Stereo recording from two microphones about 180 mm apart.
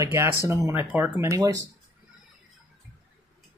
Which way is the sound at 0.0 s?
15° right (ahead or behind).